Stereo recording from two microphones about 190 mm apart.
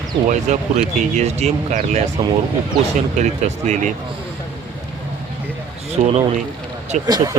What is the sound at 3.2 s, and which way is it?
Speech, 40° right (ahead or behind).